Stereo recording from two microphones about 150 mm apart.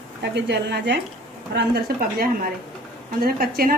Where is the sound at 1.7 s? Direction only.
80° right.